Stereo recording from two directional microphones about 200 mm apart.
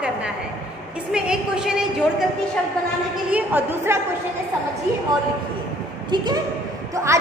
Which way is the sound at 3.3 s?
10° right (ahead or behind).